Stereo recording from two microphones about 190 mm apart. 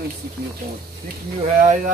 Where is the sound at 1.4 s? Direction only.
40° right (ahead or behind).